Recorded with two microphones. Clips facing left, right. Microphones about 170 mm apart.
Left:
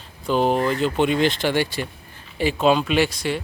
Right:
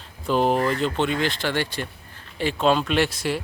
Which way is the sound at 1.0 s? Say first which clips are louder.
Left 4 dB; 20° left (ahead or behind).